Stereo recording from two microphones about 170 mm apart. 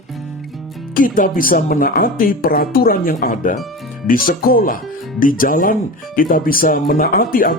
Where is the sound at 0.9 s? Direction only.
55° left (ahead or behind).